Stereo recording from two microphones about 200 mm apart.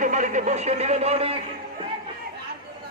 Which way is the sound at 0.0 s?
40° right (ahead or behind).